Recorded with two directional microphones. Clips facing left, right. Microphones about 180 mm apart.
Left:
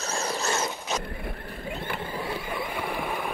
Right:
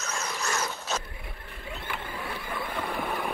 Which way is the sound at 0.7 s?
15° left (ahead or behind).